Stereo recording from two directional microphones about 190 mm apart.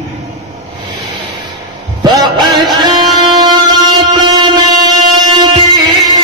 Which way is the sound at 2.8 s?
25° right (ahead or behind).